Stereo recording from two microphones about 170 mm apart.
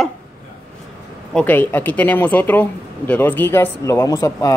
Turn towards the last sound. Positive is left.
turn(degrees=20)  # may be behind; listen again after turning